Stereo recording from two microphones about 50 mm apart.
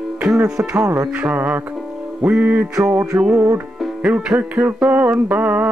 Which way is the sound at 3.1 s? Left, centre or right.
Right.